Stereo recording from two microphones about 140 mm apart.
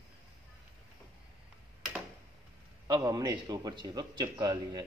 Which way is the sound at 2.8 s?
30° right (ahead or behind).